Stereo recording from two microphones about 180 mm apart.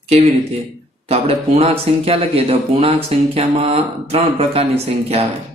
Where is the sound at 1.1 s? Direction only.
35° right (ahead or behind).